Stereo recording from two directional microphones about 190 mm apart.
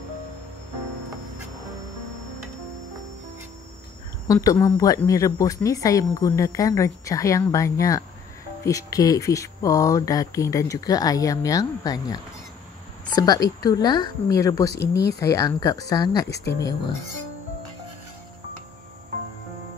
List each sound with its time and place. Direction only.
4.3 s speech: 20° left (ahead or behind)
14.8 s speech: 60° left (ahead or behind)
15.1 s speech: 15° left (ahead or behind)
16.3 s speech: 60° left (ahead or behind)